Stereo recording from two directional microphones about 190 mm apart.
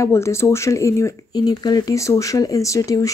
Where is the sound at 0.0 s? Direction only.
15° left (ahead or behind).